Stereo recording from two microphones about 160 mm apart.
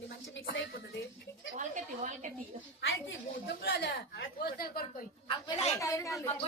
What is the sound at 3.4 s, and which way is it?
A woman's voice, 90° left.